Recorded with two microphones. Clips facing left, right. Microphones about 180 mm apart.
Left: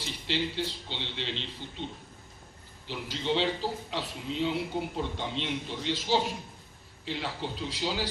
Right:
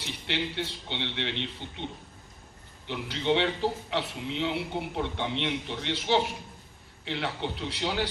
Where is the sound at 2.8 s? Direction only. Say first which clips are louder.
Right 3 dB; 60° right (ahead or behind).